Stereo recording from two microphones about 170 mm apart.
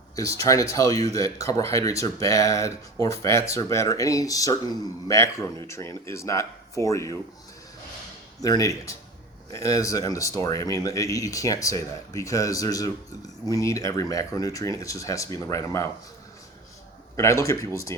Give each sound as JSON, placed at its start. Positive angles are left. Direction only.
{"t": 0.2, "sound": "speech", "side_deg": 20}
{"t": 8.4, "sound": "speech", "side_deg": 20}
{"t": 17.2, "sound": "speech", "side_deg": 15}